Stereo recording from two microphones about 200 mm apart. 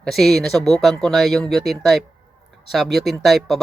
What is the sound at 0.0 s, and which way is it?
Speech, centre (ahead or behind).